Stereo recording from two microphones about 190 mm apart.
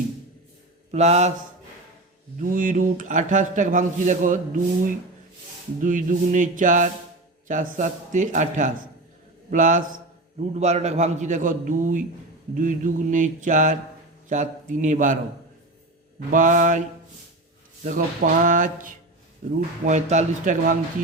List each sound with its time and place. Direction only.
0.9 s a man's voice: 35° right (ahead or behind)
2.4 s a man's voice: 45° right (ahead or behind)
5.8 s a man's voice: 45° right (ahead or behind)
16.3 s a man's voice: 45° right (ahead or behind)
17.8 s a man's voice: 45° right (ahead or behind)